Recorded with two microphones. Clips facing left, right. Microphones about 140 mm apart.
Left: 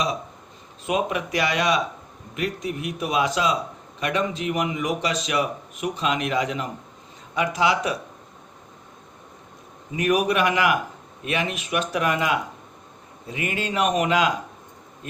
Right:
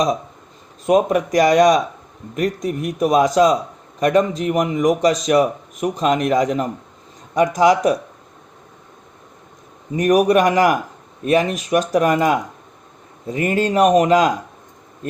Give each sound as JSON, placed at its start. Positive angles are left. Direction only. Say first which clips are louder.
{"t": 0.9, "sound": "a man's voice", "louder": "right 9 dB", "side_deg": -40}
{"t": 9.9, "sound": "speech", "louder": "right 7 dB", "side_deg": -40}